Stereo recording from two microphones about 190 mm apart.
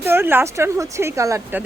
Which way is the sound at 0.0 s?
10° right (ahead or behind).